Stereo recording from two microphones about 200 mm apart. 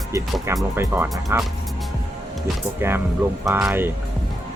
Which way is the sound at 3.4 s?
10° right (ahead or behind).